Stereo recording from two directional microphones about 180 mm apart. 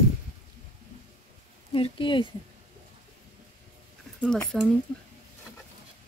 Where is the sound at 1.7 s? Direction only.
30° left (ahead or behind).